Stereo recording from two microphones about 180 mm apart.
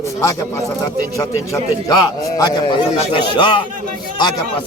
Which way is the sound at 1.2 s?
15° left (ahead or behind).